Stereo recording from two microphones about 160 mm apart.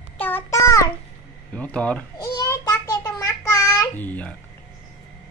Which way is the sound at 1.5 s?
10° left (ahead or behind).